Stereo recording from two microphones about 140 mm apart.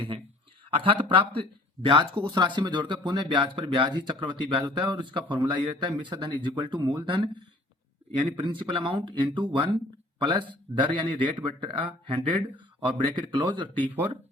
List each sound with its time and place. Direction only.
0.7 s speech: 40° right (ahead or behind)